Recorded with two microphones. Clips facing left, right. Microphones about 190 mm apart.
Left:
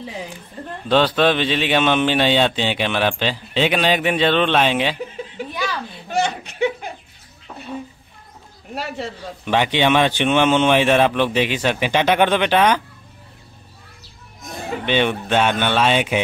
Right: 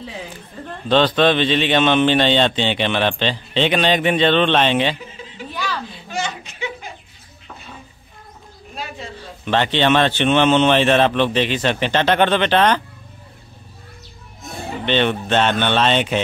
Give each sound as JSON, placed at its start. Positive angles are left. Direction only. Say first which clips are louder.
{"t": 0.8, "sound": "a man's voice", "louder": "right 1 dB", "side_deg": 10}
{"t": 6.0, "sound": "a sound", "louder": "left 7 dB", "side_deg": 60}
{"t": 8.7, "sound": "speech", "louder": "left 5 dB", "side_deg": 75}
{"t": 9.4, "sound": "a man's voice", "louder": "even", "side_deg": 10}
{"t": 14.9, "sound": "a man's voice", "louder": "right 1 dB", "side_deg": 10}